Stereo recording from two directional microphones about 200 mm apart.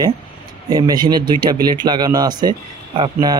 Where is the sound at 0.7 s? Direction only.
20° right (ahead or behind).